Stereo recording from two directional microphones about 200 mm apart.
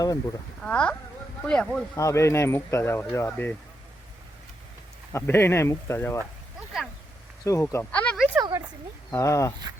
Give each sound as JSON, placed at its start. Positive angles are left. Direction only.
{"t": 0.6, "sound": "speech", "side_deg": 5}
{"t": 2.0, "sound": "speech", "side_deg": 15}
{"t": 5.1, "sound": "speech", "side_deg": 10}
{"t": 7.4, "sound": "speech", "side_deg": 15}
{"t": 8.4, "sound": "speech", "side_deg": -15}
{"t": 9.0, "sound": "speech", "side_deg": 15}